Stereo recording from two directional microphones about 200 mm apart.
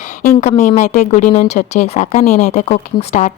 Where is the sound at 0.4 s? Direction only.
35° left (ahead or behind).